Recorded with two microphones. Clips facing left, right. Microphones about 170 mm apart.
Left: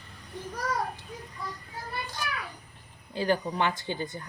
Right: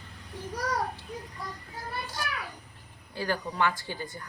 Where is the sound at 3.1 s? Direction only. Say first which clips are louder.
Left 4 dB; 20° left (ahead or behind).